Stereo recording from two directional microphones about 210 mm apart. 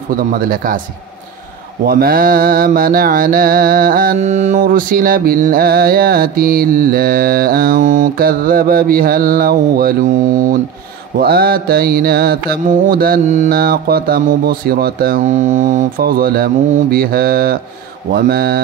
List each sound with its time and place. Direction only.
0.1 s a man's voice: 40° right (ahead or behind)
1.9 s mantra: 45° right (ahead or behind)
11.1 s mantra: 45° right (ahead or behind)